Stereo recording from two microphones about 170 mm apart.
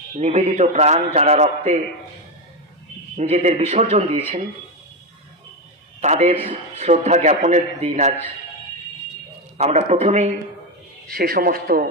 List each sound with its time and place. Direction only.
0.1 s a man's voice: 40° right (ahead or behind)
3.2 s a man's voice: 40° right (ahead or behind)
5.9 s a man's voice: 40° right (ahead or behind)
9.6 s a man's voice: 40° right (ahead or behind)
11.1 s a man's voice: 65° right (ahead or behind)